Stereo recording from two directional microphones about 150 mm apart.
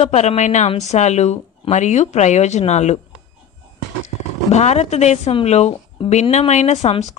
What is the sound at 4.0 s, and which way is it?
A woman's voice, 50° left (ahead or behind).